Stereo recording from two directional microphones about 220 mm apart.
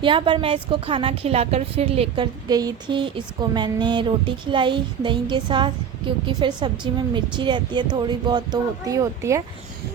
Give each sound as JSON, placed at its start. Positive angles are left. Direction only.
{"t": 0.0, "sound": "a woman's voice", "side_deg": -20}